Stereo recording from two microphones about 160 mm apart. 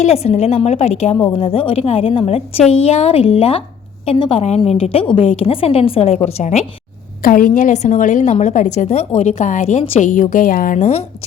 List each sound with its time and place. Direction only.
0.0 s a woman's voice: 40° left (ahead or behind)
7.2 s a woman's voice: 60° left (ahead or behind); by 11.0 s 45° left (ahead or behind)